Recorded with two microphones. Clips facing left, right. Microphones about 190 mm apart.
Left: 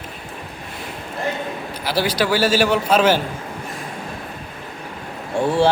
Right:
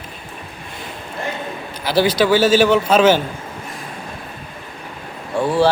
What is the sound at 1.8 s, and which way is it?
Speech, 5° left (ahead or behind).